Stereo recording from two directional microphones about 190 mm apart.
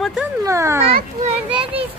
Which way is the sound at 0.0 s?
5° right (ahead or behind).